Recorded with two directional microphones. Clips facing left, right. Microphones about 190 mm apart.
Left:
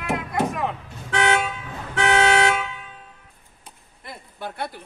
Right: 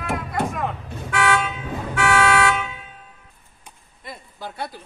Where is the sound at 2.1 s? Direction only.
25° left (ahead or behind).